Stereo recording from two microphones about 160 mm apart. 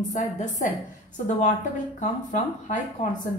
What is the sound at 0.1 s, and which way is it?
A woman's voice, 55° left (ahead or behind).